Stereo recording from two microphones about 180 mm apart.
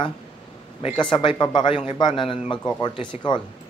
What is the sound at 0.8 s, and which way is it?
A man's voice, 25° left (ahead or behind).